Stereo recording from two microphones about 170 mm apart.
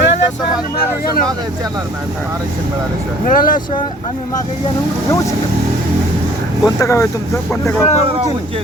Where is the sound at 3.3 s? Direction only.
55° left (ahead or behind).